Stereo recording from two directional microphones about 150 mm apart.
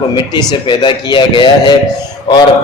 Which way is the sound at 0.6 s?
30° left (ahead or behind).